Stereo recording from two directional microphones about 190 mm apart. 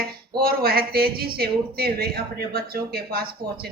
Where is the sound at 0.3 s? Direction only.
55° right (ahead or behind).